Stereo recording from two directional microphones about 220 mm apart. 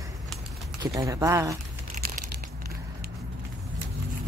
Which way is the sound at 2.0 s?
35° right (ahead or behind).